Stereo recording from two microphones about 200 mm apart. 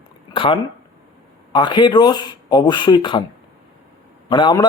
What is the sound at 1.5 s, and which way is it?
Speech, 25° left (ahead or behind).